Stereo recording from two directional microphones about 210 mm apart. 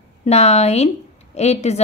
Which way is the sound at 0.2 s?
30° left (ahead or behind).